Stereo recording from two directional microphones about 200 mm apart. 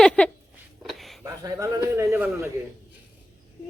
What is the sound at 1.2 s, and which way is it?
A man's voice, 15° right (ahead or behind).